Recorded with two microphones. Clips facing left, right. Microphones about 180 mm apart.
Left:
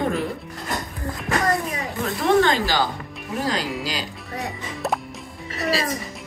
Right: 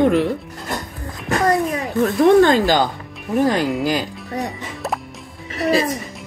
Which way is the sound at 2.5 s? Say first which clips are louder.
Right 6 dB; 50° right (ahead or behind).